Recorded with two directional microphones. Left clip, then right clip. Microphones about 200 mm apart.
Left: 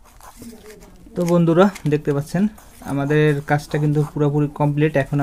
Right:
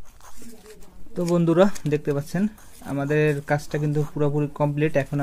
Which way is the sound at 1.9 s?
10° right (ahead or behind).